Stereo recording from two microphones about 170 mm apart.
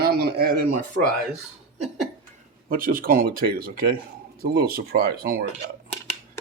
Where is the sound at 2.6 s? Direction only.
55° right (ahead or behind).